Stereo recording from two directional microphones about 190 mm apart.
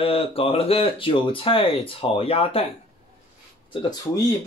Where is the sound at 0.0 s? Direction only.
30° left (ahead or behind).